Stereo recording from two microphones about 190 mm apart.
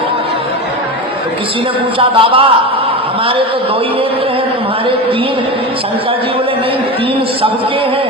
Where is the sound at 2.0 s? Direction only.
30° right (ahead or behind).